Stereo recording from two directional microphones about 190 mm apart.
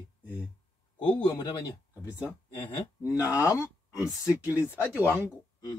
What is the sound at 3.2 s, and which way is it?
Speech, 10° right (ahead or behind).